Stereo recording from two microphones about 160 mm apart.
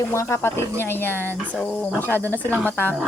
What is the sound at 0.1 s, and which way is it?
Speech, 15° left (ahead or behind).